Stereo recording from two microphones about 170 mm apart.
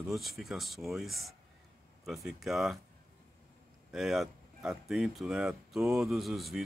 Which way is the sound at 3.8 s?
Centre (ahead or behind).